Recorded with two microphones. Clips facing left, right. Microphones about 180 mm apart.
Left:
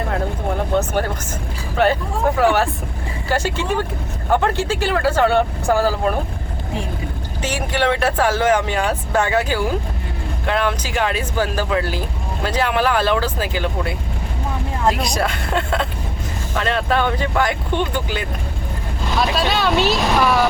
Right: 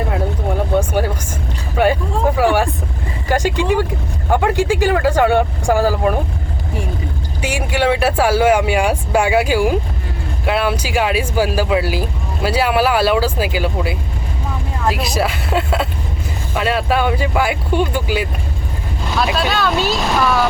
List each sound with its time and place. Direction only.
0.8 s a sound: 10° right (ahead or behind)
1.7 s vehicle: 10° right (ahead or behind)
4.3 s speech: 15° right (ahead or behind)
7.4 s speech: 10° right (ahead or behind)
19.3 s speech: 5° right (ahead or behind)